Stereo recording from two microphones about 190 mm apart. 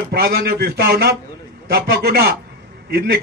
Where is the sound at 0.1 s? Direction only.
55° right (ahead or behind).